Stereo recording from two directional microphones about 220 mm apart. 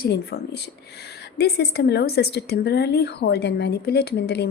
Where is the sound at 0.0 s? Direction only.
45° left (ahead or behind).